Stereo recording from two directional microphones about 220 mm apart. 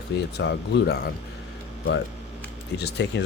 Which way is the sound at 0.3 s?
50° left (ahead or behind).